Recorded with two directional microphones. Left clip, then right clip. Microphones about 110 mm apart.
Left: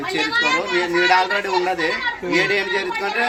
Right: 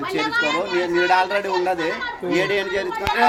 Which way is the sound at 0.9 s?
50° right (ahead or behind).